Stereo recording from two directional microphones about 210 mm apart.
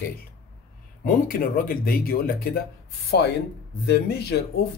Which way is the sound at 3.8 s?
50° left (ahead or behind).